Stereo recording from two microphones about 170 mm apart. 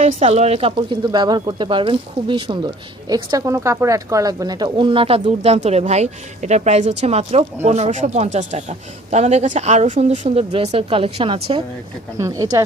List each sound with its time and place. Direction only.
0.0 s speech: 40° right (ahead or behind)
12.1 s speech: 20° right (ahead or behind)